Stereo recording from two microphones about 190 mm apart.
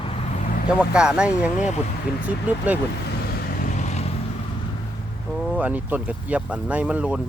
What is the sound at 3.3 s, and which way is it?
Vehicle, 55° left (ahead or behind).